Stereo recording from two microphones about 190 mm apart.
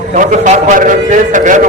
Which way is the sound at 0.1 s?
40° right (ahead or behind).